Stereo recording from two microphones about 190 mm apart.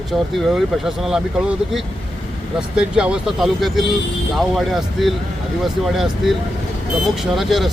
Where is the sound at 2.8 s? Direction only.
5° right (ahead or behind).